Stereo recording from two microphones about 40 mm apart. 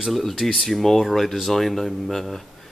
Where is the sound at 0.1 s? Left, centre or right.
Centre.